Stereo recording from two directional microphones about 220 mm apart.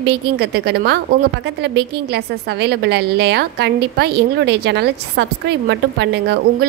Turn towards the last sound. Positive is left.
turn(degrees=-50)  # may be behind; listen again after turning